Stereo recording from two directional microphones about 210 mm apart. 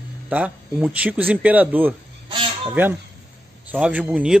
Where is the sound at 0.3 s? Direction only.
5° right (ahead or behind).